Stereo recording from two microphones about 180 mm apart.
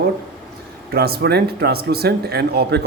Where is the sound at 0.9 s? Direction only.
60° right (ahead or behind).